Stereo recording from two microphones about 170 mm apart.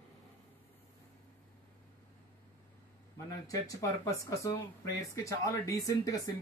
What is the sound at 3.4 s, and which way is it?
Speech, 20° left (ahead or behind).